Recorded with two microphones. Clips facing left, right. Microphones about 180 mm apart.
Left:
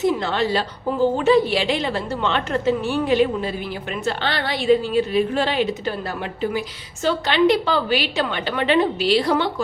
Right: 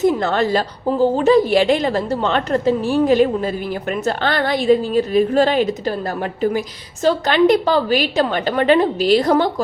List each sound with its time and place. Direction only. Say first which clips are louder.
0.0 s a woman's voice: right 4 dB; 45° right (ahead or behind)